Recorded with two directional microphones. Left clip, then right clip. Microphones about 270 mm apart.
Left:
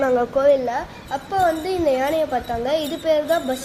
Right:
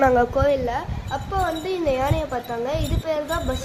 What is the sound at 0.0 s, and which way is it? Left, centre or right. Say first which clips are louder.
A woman's voice: left 1 dB; right.